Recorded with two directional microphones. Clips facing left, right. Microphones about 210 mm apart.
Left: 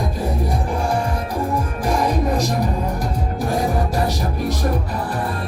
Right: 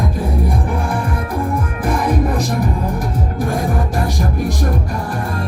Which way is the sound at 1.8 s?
55° right (ahead or behind).